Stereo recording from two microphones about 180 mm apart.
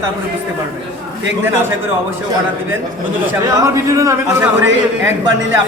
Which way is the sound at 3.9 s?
15° right (ahead or behind).